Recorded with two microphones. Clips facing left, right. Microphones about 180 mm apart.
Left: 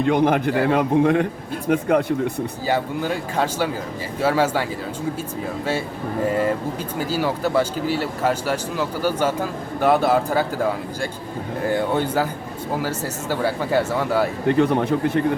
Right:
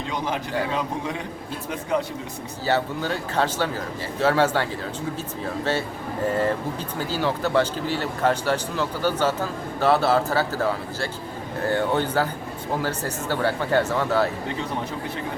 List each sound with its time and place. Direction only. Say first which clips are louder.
0.0 s speech: left 10 dB; 60° left (ahead or behind)
2.6 s speech: even; 10° left (ahead or behind)
7.1 s speech: left 1 dB; 10° left (ahead or behind)
14.4 s speech: left 11 dB; 60° left (ahead or behind)